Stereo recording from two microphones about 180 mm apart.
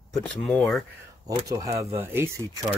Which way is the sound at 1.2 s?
20° right (ahead or behind).